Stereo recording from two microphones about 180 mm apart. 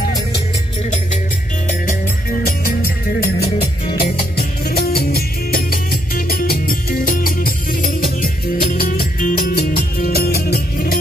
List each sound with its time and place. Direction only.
2.4 s music: 55° left (ahead or behind)
3.9 s music: 60° left (ahead or behind)